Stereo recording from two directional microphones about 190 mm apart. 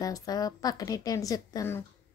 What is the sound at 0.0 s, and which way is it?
A woman's voice, 20° left (ahead or behind).